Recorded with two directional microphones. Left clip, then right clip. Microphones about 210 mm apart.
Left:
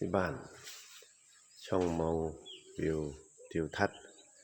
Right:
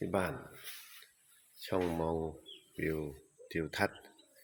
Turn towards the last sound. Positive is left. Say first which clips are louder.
# left 1 dB
turn(degrees=15)  # may be behind; listen again after turning